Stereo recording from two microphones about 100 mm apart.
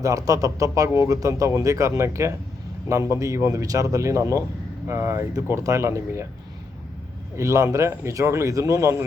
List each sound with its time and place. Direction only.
0.0 s speech: 35° right (ahead or behind)
7.3 s speech: 30° right (ahead or behind)